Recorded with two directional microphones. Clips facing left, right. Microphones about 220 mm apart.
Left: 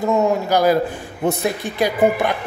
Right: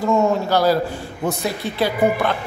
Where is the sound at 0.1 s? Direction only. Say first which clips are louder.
Even; 20° left (ahead or behind).